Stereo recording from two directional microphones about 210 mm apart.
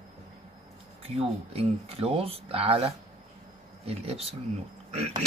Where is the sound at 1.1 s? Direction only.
30° right (ahead or behind).